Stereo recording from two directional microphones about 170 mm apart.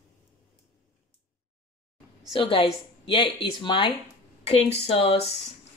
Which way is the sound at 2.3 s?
30° left (ahead or behind).